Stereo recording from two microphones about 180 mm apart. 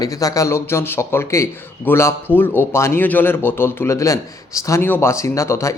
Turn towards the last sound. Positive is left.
turn(degrees=15)  # may be behind; listen again after turning